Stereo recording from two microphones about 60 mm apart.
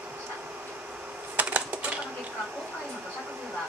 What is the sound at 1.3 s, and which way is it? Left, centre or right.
Typing, right.